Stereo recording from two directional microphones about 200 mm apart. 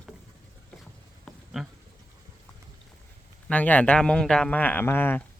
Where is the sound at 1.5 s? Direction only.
Centre (ahead or behind).